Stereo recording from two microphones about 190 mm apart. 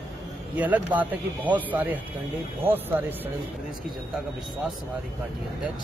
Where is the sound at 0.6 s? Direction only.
10° right (ahead or behind).